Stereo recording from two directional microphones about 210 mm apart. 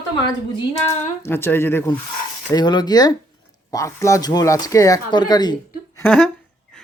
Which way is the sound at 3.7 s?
15° left (ahead or behind).